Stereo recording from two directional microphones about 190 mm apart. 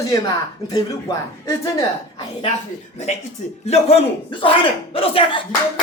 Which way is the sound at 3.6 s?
35° left (ahead or behind).